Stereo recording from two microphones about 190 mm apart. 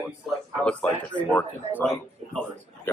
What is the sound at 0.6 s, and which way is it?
Speech, 5° left (ahead or behind).